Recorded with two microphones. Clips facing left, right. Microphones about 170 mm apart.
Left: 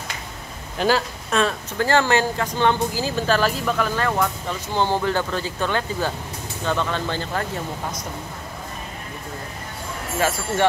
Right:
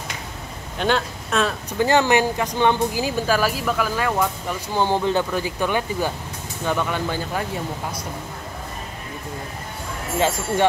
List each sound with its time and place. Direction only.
0.7 s speech: 5° left (ahead or behind)
1.8 s speech: 15° right (ahead or behind)
10.1 s speech: 20° right (ahead or behind)